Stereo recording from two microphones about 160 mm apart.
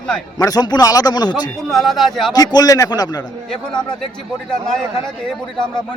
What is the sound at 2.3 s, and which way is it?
Speech, 25° left (ahead or behind).